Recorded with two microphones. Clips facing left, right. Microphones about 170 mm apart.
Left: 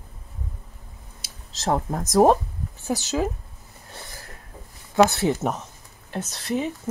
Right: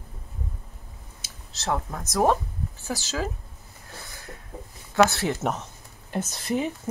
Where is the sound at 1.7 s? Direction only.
40° left (ahead or behind).